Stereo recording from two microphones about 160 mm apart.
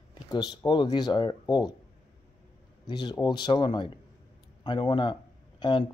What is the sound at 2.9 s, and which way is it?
Speech, 30° left (ahead or behind).